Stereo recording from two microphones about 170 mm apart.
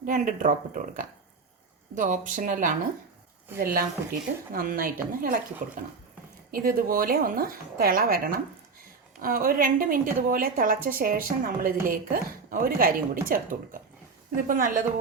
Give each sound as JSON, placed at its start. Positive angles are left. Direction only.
{"t": 0.0, "sound": "a woman's voice", "side_deg": -50}